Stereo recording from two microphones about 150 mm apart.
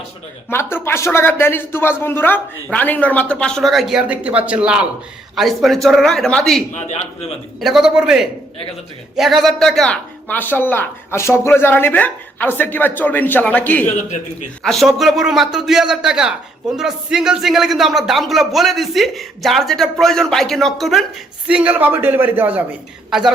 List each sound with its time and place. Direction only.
0.5 s a man's voice: 15° left (ahead or behind)
6.7 s a man's voice: 50° left (ahead or behind)
7.6 s a woman's voice: centre (ahead or behind)